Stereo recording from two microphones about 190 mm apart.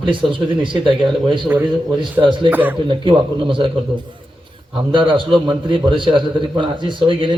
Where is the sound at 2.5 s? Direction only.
10° right (ahead or behind).